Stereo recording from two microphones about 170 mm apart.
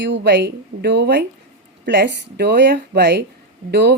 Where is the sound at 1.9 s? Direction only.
90° right.